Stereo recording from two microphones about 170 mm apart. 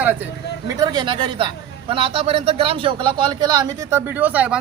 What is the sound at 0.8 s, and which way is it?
A man's voice, 25° right (ahead or behind).